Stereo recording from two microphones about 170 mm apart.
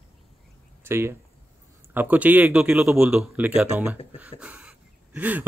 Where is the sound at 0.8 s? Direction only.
15° right (ahead or behind).